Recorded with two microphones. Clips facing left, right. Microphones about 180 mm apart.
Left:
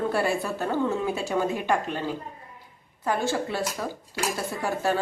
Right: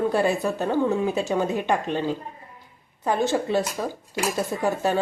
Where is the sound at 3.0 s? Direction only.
20° right (ahead or behind).